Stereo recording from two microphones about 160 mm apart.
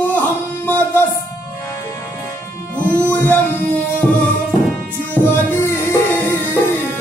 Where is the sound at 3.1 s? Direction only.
10° left (ahead or behind).